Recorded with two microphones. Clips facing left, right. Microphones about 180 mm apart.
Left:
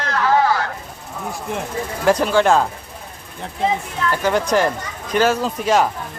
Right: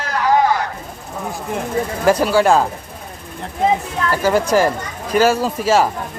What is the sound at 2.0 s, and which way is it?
Speech, 5° right (ahead or behind).